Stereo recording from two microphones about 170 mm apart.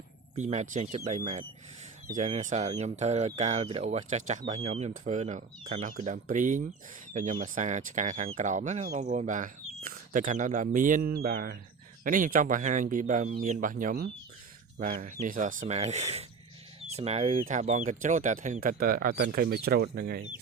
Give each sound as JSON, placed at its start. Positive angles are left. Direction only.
{"t": 0.3, "sound": "speech", "side_deg": -45}
{"t": 14.9, "sound": "speech", "side_deg": -45}